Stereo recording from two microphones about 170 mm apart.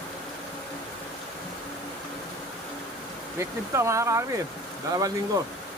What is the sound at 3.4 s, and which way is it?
Speech, 15° right (ahead or behind).